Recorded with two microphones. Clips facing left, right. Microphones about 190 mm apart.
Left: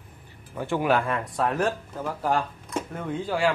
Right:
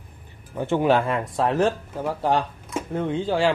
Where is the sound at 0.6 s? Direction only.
20° right (ahead or behind).